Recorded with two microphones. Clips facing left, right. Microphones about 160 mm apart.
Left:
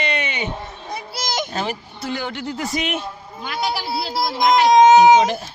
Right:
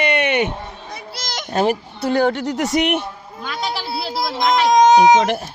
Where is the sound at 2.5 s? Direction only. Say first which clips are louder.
Right 6 dB; 75° right (ahead or behind).